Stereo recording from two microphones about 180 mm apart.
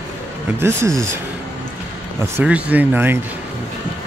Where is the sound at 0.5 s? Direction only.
15° right (ahead or behind).